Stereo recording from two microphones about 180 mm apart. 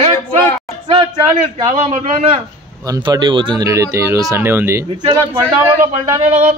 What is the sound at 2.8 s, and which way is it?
Speech, 20° right (ahead or behind).